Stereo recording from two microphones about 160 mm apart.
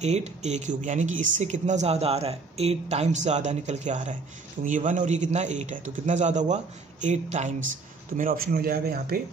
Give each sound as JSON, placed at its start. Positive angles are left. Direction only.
{"t": 0.0, "sound": "speech", "side_deg": -45}
{"t": 8.2, "sound": "speech", "side_deg": -65}